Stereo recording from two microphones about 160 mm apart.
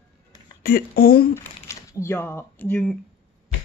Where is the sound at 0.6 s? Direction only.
70° left (ahead or behind).